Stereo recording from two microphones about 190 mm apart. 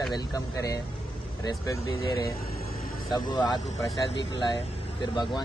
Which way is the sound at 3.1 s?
20° left (ahead or behind).